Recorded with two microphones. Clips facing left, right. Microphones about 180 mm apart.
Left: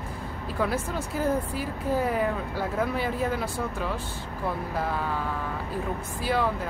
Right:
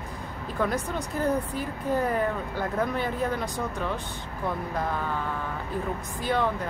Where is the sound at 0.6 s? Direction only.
5° left (ahead or behind).